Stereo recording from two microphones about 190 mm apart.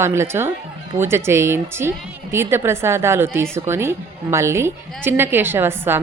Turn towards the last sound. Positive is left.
turn(degrees=-10)  # may be behind; listen again after turning